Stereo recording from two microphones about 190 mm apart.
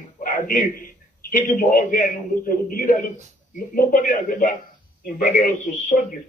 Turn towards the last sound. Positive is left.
turn(degrees=40)  # may be behind; listen again after turning